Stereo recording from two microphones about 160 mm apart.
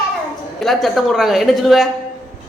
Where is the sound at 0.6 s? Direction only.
Centre (ahead or behind).